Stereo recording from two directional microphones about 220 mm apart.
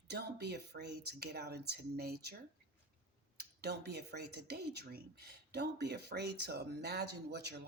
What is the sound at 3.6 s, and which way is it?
Speech, 45° right (ahead or behind).